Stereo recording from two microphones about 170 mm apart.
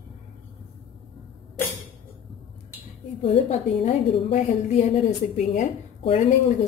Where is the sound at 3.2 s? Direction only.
35° left (ahead or behind).